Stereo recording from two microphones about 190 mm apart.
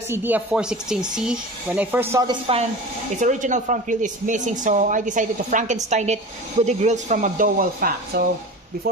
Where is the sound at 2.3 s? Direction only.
30° right (ahead or behind).